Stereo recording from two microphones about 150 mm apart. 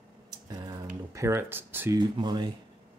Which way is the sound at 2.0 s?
30° right (ahead or behind).